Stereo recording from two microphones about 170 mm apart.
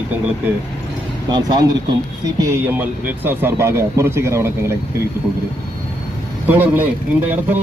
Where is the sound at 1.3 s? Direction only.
25° right (ahead or behind).